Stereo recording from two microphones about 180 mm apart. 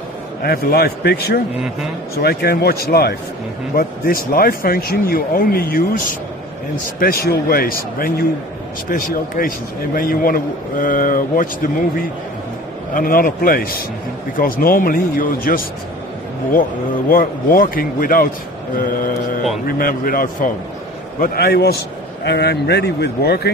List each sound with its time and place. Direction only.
0.4 s a man's voice: 60° left (ahead or behind)
7.0 s a man's voice: 55° left (ahead or behind)
12.9 s a man's voice: 50° left (ahead or behind)
17.1 s a man's voice: 50° left (ahead or behind)
19.8 s a man's voice: 50° left (ahead or behind)